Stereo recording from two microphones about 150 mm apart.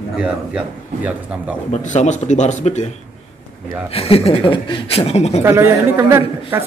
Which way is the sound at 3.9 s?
40° left (ahead or behind).